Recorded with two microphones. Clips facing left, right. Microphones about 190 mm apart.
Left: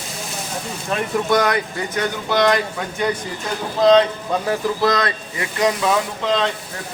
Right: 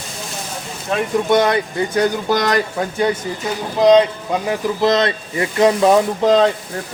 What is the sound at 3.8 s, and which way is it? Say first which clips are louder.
Speech: right 2 dB; 15° right (ahead or behind).